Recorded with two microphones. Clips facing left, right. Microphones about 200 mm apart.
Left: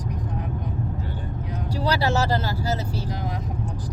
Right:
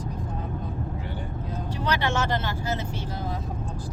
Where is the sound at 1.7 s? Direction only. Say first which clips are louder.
Left 4 dB; 35° left (ahead or behind).